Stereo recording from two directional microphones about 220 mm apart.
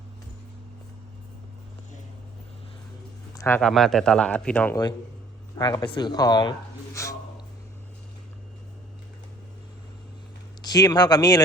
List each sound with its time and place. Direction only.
3.3 s speech: 10° left (ahead or behind)
5.5 s speech: 20° left (ahead or behind)
6.9 s a sound: 15° left (ahead or behind)
10.6 s speech: 15° left (ahead or behind)